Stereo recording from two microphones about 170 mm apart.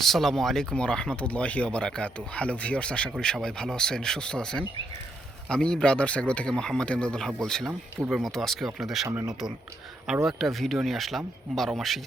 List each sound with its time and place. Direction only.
0.0 s speech: centre (ahead or behind)